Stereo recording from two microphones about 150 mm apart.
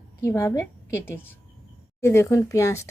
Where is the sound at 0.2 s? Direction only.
20° left (ahead or behind).